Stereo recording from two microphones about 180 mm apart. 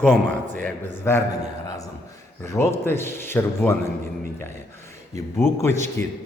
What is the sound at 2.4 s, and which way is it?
A man's voice, 15° left (ahead or behind).